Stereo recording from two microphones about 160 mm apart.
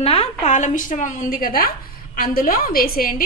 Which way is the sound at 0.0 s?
40° left (ahead or behind).